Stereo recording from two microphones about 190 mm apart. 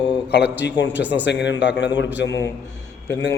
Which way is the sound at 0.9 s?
10° right (ahead or behind).